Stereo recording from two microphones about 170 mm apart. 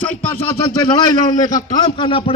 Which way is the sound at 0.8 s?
20° left (ahead or behind).